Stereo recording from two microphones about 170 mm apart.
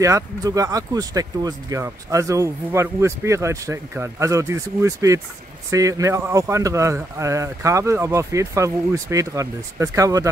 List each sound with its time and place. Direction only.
0.0 s speech: 20° right (ahead or behind)